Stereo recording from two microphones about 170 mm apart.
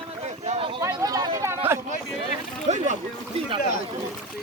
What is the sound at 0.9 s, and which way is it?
Speech, 25° right (ahead or behind).